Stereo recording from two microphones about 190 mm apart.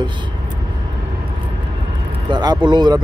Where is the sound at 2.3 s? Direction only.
20° right (ahead or behind).